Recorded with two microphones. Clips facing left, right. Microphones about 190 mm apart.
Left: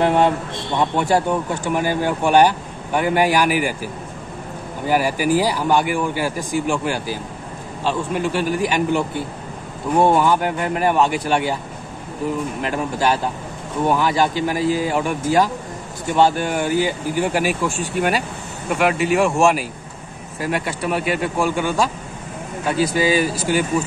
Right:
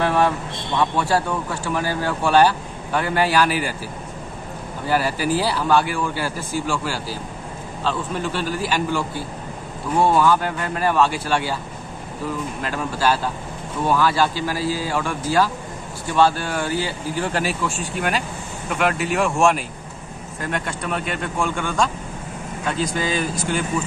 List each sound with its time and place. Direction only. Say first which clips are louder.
0.0 s a sound: left 3 dB; 20° left (ahead or behind)
0.7 s a man's voice: left 2 dB; 20° left (ahead or behind)
4.8 s a man's voice: left 3 dB; 15° left (ahead or behind)
12.6 s a man's voice: left 1 dB; 20° left (ahead or behind)